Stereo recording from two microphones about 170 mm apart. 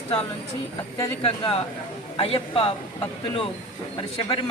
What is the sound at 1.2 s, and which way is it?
Speech, 35° left (ahead or behind).